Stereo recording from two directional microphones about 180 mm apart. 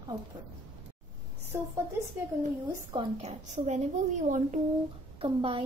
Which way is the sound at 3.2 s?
40° right (ahead or behind).